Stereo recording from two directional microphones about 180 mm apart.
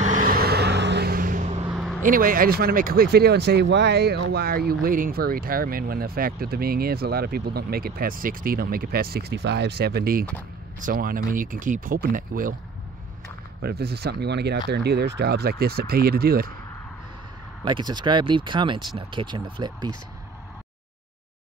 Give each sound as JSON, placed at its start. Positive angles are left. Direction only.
{"t": 0.0, "sound": "vehicle", "side_deg": -45}
{"t": 1.7, "sound": "vehicle", "side_deg": 0}
{"t": 2.0, "sound": "speech", "side_deg": -50}
{"t": 13.6, "sound": "speech", "side_deg": -60}
{"t": 17.6, "sound": "speech", "side_deg": -25}